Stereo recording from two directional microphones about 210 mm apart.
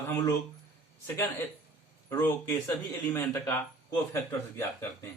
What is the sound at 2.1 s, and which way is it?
Speech, 10° left (ahead or behind).